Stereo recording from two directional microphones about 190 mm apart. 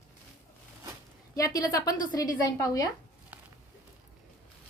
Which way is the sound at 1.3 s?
20° left (ahead or behind).